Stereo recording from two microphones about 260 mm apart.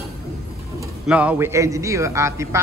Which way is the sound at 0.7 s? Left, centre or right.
Centre.